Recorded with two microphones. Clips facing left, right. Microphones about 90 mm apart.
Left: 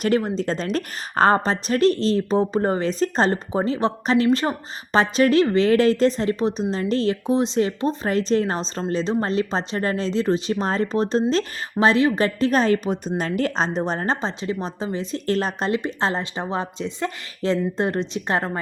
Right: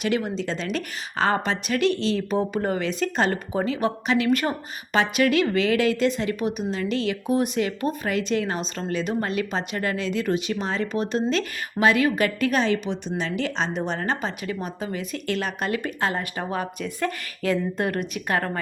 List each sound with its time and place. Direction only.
0.0 s speech: 40° left (ahead or behind)